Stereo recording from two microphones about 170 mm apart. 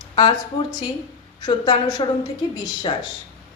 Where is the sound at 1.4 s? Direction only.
25° left (ahead or behind).